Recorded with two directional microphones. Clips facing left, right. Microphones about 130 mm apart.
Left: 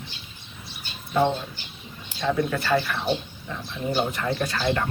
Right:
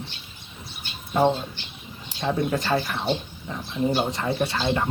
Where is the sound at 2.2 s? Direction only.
20° right (ahead or behind).